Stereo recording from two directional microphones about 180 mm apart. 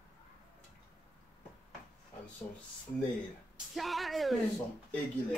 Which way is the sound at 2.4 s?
10° left (ahead or behind).